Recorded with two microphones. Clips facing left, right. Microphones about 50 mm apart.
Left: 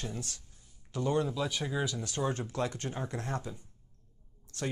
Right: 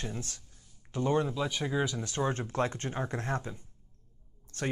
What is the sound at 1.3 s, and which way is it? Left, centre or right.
Speech, centre.